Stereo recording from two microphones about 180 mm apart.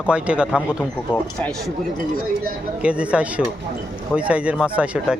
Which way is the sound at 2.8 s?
5° right (ahead or behind).